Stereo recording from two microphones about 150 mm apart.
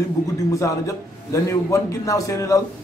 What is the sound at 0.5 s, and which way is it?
A man's voice, 20° left (ahead or behind).